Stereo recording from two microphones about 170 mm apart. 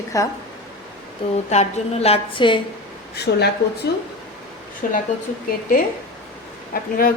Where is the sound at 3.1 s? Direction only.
75° left (ahead or behind).